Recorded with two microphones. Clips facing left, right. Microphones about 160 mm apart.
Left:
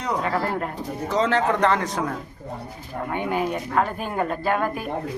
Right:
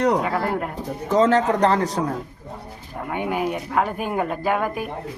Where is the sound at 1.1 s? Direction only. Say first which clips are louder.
Right 4 dB; 45° right (ahead or behind).